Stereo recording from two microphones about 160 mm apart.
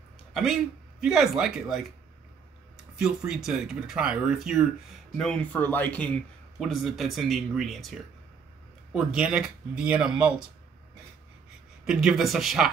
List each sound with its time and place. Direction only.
0.3 s speech: centre (ahead or behind)
3.0 s speech: 5° right (ahead or behind)
5.1 s speech: 5° left (ahead or behind)
6.6 s speech: centre (ahead or behind)
8.9 s speech: 5° right (ahead or behind)
11.8 s speech: 5° right (ahead or behind)